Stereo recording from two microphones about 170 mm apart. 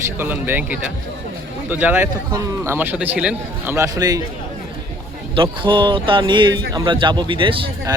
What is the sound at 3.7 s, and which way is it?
Speech, 20° right (ahead or behind).